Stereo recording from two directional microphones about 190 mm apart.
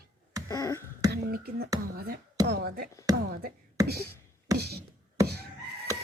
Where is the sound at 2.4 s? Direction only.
55° right (ahead or behind).